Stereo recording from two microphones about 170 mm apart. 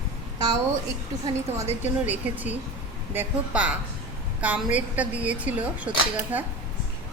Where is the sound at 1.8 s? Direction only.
10° right (ahead or behind).